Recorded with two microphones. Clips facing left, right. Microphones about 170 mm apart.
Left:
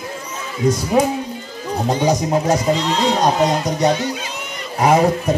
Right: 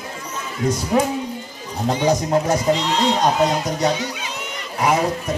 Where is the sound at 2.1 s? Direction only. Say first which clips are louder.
Even; 15° left (ahead or behind).